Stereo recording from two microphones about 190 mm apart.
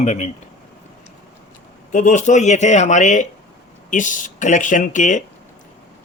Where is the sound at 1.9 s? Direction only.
40° left (ahead or behind).